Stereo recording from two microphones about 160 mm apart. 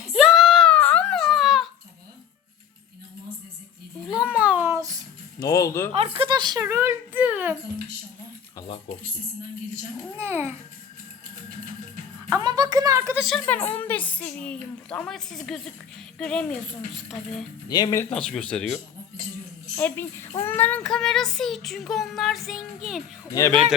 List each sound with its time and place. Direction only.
0.1 s a sound: 5° right (ahead or behind)
4.0 s a sound: 5° right (ahead or behind); by 5.0 s 20° right (ahead or behind)
5.4 s speech: 20° left (ahead or behind)
5.9 s speech: 35° right (ahead or behind); by 7.5 s 10° right (ahead or behind)
10.2 s a child's voice: 15° right (ahead or behind)
12.3 s speech: 25° right (ahead or behind)
13.2 s a woman's voice: 5° left (ahead or behind)
17.7 s speech: 25° left (ahead or behind)
18.1 s a woman's voice: 5° left (ahead or behind)
23.5 s speech: 35° right (ahead or behind)